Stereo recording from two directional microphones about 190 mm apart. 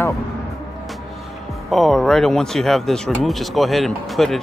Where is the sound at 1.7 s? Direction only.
Centre (ahead or behind).